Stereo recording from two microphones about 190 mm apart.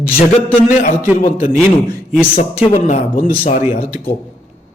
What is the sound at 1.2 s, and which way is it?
Speech, 45° left (ahead or behind).